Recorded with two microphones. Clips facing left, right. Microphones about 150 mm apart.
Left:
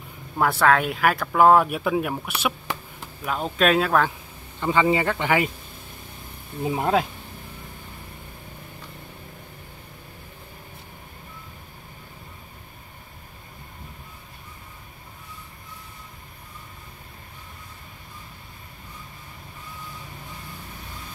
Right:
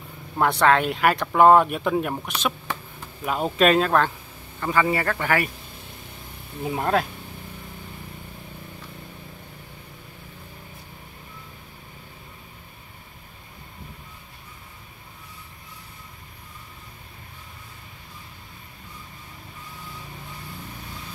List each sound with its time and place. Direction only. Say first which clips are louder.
0.4 s speech: right 1 dB; 5° left (ahead or behind)
3.3 s speech: right 2 dB; 5° right (ahead or behind)
4.6 s speech: left 2 dB; 20° left (ahead or behind)
6.6 s speech: left 1 dB; 15° left (ahead or behind)